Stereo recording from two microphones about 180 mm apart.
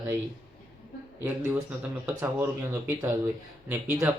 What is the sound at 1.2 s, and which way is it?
Speech, 10° right (ahead or behind).